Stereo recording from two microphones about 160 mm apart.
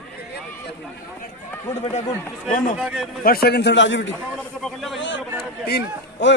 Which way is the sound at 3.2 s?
70° left (ahead or behind).